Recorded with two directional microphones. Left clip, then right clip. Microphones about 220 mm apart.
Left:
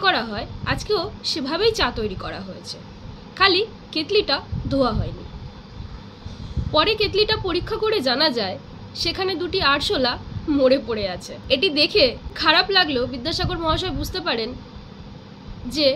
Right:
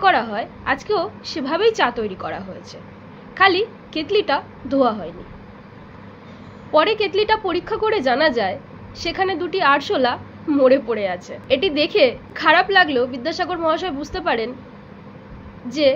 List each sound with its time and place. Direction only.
0.0 s a woman's voice: 20° left (ahead or behind)
6.7 s a woman's voice: 20° left (ahead or behind)